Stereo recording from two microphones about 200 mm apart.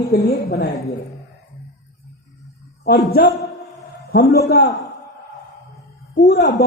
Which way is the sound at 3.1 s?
50° left (ahead or behind).